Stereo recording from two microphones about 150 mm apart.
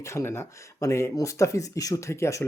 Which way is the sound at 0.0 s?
20° left (ahead or behind).